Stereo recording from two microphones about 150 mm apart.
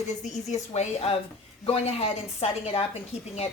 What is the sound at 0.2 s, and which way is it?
A woman's voice, 50° left (ahead or behind).